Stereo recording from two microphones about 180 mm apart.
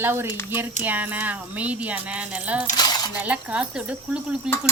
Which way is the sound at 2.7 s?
20° left (ahead or behind).